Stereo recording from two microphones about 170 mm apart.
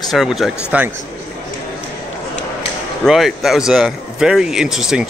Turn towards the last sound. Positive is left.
turn(degrees=-5)  # may be behind; listen again after turning